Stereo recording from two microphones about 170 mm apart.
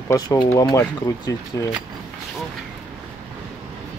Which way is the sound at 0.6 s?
20° left (ahead or behind).